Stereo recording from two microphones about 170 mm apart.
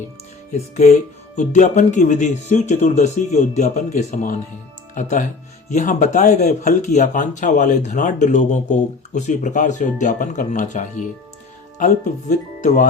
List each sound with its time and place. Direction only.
0.5 s speech: 40° left (ahead or behind)